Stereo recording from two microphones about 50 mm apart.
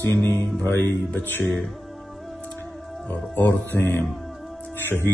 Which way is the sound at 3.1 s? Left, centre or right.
Left.